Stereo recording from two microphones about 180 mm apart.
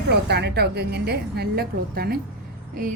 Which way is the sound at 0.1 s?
65° right (ahead or behind).